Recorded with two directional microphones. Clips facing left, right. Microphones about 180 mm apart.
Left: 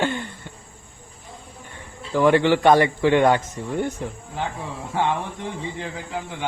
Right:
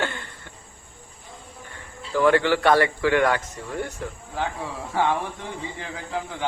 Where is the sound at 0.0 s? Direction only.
20° left (ahead or behind).